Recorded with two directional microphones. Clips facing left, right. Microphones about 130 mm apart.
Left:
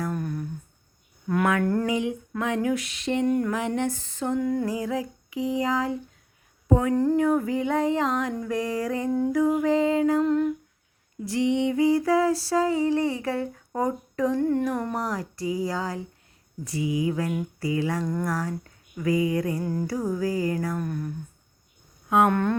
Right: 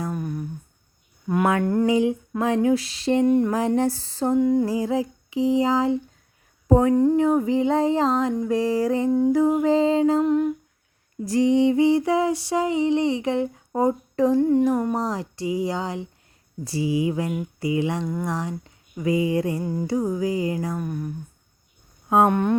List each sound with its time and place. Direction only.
0.1 s humming: 10° right (ahead or behind)
1.5 s music: 30° right (ahead or behind)
1.9 s a sound: 30° right (ahead or behind)
3.5 s a sound: 35° right (ahead or behind)
4.4 s music: 20° right (ahead or behind)
6.7 s speech: 35° right (ahead or behind)
6.9 s music: 20° right (ahead or behind)
10.2 s humming: 15° right (ahead or behind)
11.3 s music: 40° right (ahead or behind); by 18.0 s 20° right (ahead or behind)
18.0 s humming: 10° right (ahead or behind)
18.3 s speech: 20° right (ahead or behind)
19.6 s music: 15° right (ahead or behind)
20.8 s humming: 10° right (ahead or behind)
22.3 s humming: 15° right (ahead or behind)